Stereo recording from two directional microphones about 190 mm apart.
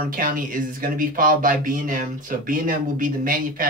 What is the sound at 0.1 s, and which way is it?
Speech, 45° right (ahead or behind).